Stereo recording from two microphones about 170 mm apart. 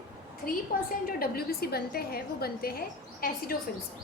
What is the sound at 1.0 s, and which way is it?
A woman's voice, 60° left (ahead or behind).